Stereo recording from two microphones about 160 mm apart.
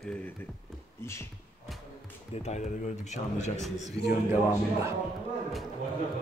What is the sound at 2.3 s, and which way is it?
Speech, 45° left (ahead or behind).